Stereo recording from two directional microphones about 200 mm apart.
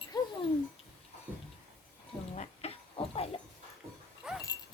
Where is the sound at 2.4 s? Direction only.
30° left (ahead or behind).